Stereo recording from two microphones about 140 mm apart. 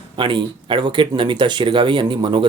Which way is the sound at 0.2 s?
35° right (ahead or behind).